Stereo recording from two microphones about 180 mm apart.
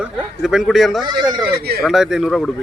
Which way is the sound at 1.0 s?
25° right (ahead or behind).